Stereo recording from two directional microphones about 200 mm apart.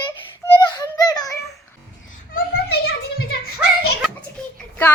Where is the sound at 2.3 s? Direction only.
55° left (ahead or behind).